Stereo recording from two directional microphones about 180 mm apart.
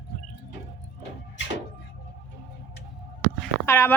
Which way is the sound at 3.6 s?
15° left (ahead or behind).